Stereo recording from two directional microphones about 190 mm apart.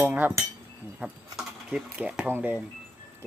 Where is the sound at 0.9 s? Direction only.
5° right (ahead or behind).